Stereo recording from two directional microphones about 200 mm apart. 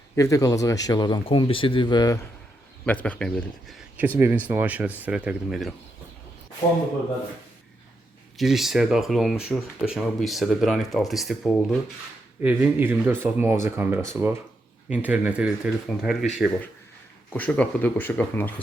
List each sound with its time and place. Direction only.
0.2 s speech: 15° left (ahead or behind)
2.8 s speech: 5° left (ahead or behind)
8.4 s speech: centre (ahead or behind)
17.3 s speech: 5° left (ahead or behind)